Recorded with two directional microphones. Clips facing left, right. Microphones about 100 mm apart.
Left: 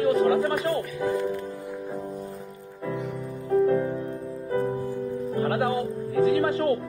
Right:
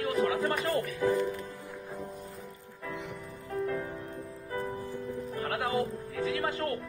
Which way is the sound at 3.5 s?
30° left (ahead or behind).